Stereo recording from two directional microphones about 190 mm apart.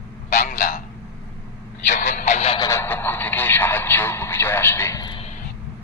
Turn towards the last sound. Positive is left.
turn(degrees=25)  # may be behind; listen again after turning